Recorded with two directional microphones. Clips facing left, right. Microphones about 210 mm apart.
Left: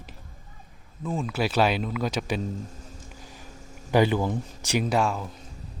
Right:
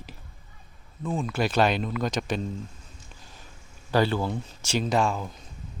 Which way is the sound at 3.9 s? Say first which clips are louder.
Left 2 dB; 15° left (ahead or behind).